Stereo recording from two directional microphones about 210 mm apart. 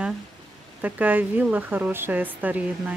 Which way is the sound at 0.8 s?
10° right (ahead or behind).